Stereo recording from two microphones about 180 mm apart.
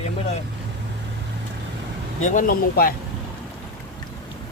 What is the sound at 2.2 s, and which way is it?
Speech, 45° left (ahead or behind).